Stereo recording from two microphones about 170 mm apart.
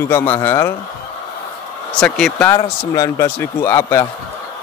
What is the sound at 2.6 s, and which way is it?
A man's voice, 15° left (ahead or behind).